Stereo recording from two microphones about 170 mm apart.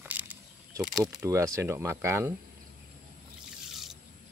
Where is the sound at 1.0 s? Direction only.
20° right (ahead or behind).